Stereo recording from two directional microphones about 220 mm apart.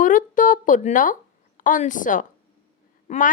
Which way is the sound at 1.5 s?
35° left (ahead or behind).